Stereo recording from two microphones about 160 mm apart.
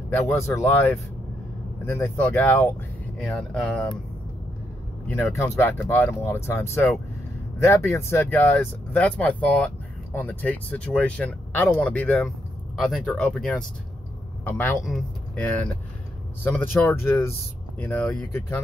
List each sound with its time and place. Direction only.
0.1 s speech: 15° left (ahead or behind)
3.3 s speech: centre (ahead or behind)
5.0 s a man's voice: 15° left (ahead or behind)